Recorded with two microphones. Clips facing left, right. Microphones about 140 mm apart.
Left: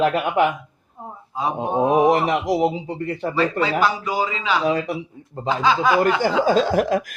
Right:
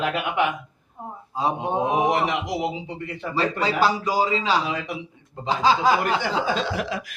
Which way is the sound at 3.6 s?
35° right (ahead or behind).